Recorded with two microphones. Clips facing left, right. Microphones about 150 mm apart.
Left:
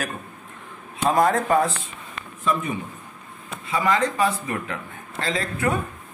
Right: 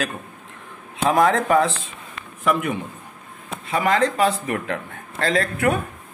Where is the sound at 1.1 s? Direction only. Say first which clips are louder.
Right 2 dB; 90° right.